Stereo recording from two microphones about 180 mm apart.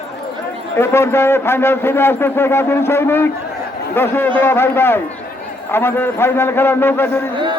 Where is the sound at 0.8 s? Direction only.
15° left (ahead or behind).